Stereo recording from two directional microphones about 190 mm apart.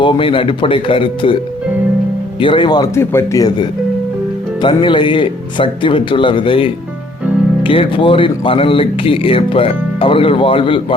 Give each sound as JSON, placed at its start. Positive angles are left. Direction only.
{"t": 0.0, "sound": "speech", "side_deg": 25}
{"t": 2.4, "sound": "speech", "side_deg": 25}